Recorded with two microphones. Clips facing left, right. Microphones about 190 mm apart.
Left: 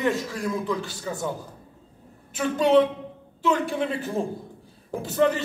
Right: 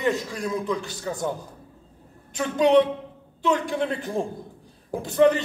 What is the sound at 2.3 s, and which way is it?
A man's voice, centre (ahead or behind).